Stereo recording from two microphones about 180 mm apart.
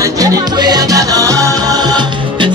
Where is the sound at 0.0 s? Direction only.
20° right (ahead or behind).